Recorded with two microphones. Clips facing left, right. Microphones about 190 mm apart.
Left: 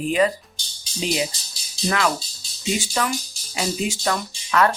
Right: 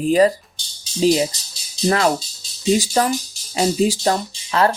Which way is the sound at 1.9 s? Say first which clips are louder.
Right 5 dB; 35° right (ahead or behind).